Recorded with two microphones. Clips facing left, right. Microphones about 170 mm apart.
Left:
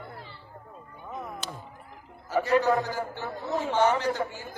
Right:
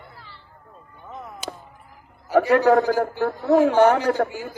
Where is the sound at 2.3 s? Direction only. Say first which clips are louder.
Right 7 dB; 80° right.